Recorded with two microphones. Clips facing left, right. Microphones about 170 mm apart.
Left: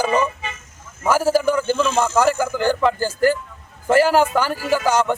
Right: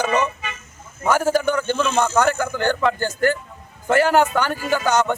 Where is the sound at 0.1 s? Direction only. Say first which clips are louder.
Left 1 dB; 30° left (ahead or behind).